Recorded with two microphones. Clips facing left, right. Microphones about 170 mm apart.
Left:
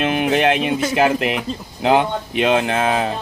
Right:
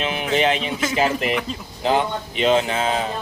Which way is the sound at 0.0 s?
60° left (ahead or behind).